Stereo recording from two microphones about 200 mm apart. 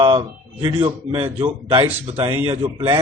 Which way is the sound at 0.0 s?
25° right (ahead or behind).